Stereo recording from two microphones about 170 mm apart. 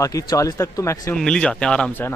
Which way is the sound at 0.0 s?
20° left (ahead or behind).